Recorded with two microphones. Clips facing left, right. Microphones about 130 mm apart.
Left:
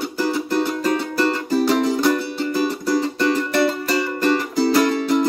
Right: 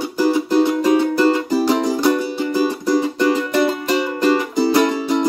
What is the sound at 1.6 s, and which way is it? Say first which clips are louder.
Music: left 2 dB; 5° right (ahead or behind).